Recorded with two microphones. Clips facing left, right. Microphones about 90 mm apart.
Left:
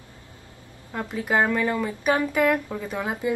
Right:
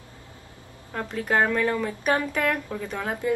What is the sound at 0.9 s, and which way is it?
A woman's voice, 10° left (ahead or behind).